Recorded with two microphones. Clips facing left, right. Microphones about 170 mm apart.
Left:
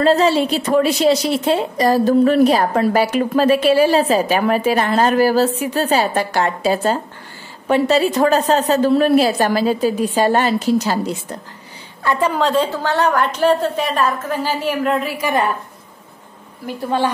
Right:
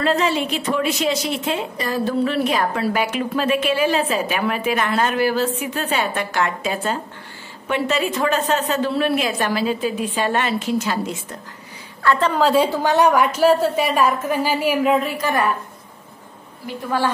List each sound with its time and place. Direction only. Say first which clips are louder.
0.0 s a woman's voice: left 6 dB; 35° left (ahead or behind)
12.0 s a woman's voice: even; 15° left (ahead or behind)
12.4 s a woman's voice: right 1 dB; 5° right (ahead or behind)
16.7 s a woman's voice: left 3 dB; 50° left (ahead or behind)